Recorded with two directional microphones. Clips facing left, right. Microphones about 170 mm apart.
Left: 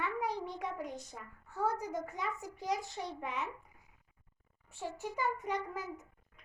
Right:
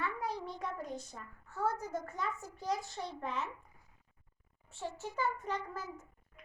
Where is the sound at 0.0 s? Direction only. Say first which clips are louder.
Left 2 dB; 15° left (ahead or behind).